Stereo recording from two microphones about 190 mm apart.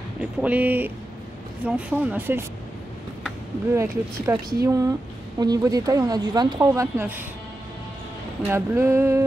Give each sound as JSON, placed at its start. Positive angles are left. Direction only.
{"t": 0.2, "sound": "speech", "side_deg": -5}
{"t": 3.7, "sound": "speech", "side_deg": -15}
{"t": 8.5, "sound": "speech", "side_deg": -10}